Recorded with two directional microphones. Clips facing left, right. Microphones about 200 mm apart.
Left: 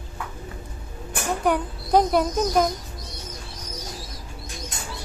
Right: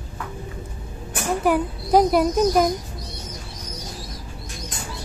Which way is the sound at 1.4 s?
5° right (ahead or behind).